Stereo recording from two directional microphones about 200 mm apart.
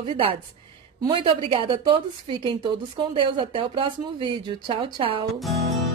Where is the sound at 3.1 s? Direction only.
25° right (ahead or behind).